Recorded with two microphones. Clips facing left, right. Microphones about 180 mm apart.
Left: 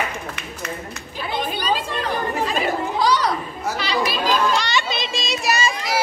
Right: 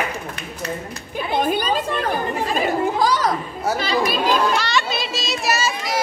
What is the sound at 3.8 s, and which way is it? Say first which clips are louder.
Children playing: right 1 dB; 50° right (ahead or behind).